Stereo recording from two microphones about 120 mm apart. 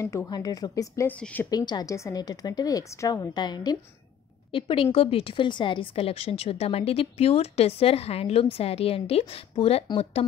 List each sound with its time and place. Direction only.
0.0 s speech: 25° left (ahead or behind)
1.0 s a woman's voice: 15° left (ahead or behind)
1.5 s a woman's voice: 35° left (ahead or behind)